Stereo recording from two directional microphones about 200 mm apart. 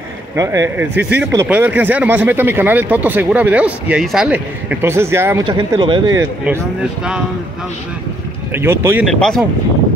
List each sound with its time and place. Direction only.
0.4 s a man's voice: 15° right (ahead or behind)
5.5 s speech: 25° right (ahead or behind)
8.5 s a man's voice: 10° right (ahead or behind)
9.0 s speech: centre (ahead or behind)